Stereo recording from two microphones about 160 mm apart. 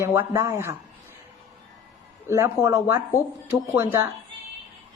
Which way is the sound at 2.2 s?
15° right (ahead or behind).